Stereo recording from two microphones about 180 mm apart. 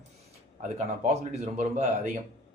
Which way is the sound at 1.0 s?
40° right (ahead or behind).